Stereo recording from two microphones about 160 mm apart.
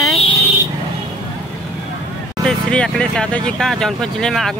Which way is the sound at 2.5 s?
5° left (ahead or behind).